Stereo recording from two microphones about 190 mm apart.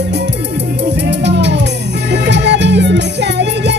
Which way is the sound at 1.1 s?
65° right (ahead or behind).